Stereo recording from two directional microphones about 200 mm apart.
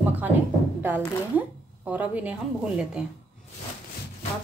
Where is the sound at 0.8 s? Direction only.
10° right (ahead or behind).